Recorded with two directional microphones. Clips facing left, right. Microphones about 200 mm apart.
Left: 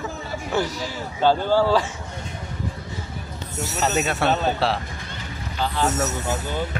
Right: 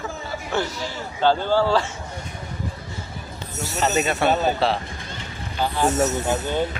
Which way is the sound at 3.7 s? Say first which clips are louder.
Right 1 dB; centre (ahead or behind).